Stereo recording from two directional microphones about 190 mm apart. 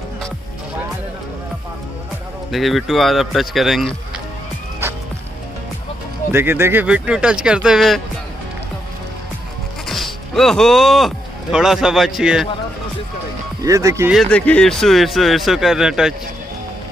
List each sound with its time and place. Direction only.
2.5 s speech: centre (ahead or behind)
6.3 s speech: 10° right (ahead or behind)
9.8 s speech: centre (ahead or behind)
13.6 s speech: 15° right (ahead or behind)
14.1 s speech: 5° left (ahead or behind)